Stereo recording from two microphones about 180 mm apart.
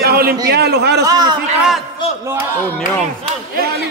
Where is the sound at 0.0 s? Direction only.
60° right (ahead or behind).